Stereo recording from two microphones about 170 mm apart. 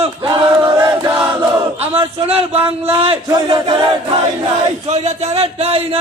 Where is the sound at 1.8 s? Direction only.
35° right (ahead or behind).